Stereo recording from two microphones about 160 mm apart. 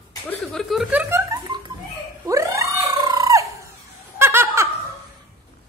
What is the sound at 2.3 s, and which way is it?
Cat, 20° right (ahead or behind).